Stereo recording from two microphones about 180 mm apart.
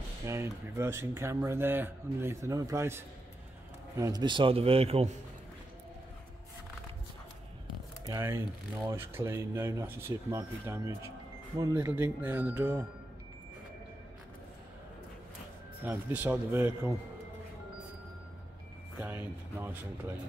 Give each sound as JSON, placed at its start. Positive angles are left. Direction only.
{"t": 0.3, "sound": "a man's voice", "side_deg": -15}
{"t": 8.0, "sound": "speech", "side_deg": -15}
{"t": 15.8, "sound": "speech", "side_deg": -10}
{"t": 18.9, "sound": "speech", "side_deg": -10}